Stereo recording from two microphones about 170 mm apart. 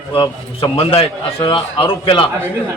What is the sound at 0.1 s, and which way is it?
A man's voice, 30° left (ahead or behind).